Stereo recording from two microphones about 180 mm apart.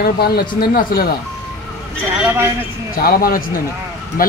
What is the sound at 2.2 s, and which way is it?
Speech, 10° right (ahead or behind).